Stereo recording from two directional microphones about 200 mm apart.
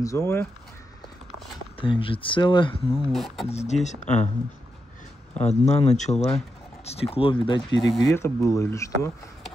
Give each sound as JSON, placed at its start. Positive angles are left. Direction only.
{"t": 0.0, "sound": "speech", "side_deg": 15}
{"t": 1.8, "sound": "speech", "side_deg": 25}
{"t": 3.1, "sound": "speech", "side_deg": 0}
{"t": 3.4, "sound": "speech", "side_deg": 30}
{"t": 5.4, "sound": "speech", "side_deg": 35}